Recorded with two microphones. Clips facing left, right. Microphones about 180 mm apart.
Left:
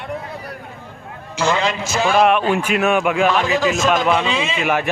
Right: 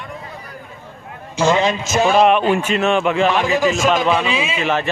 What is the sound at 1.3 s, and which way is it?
Speech, 20° right (ahead or behind).